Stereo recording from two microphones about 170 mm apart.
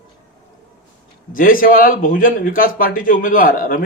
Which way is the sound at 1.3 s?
55° left (ahead or behind).